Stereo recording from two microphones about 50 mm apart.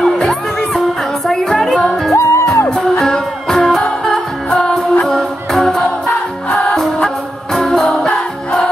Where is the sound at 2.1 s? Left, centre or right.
Left.